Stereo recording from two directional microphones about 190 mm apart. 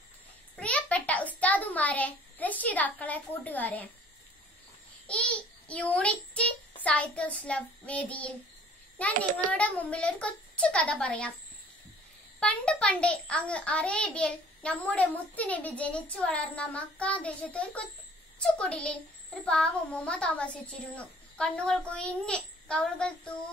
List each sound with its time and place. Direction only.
0.6 s a child's voice: 5° left (ahead or behind)
5.0 s a child's voice: 5° left (ahead or behind)
9.1 s a child's voice: 45° right (ahead or behind)
9.5 s a child's voice: 5° left (ahead or behind)
12.4 s a child's voice: 5° left (ahead or behind)